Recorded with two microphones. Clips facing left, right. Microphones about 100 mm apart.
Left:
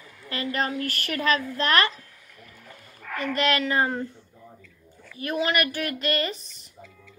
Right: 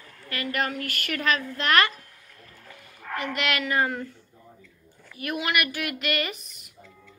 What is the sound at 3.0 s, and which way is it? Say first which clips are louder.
Dog: left 1 dB; 10° right (ahead or behind).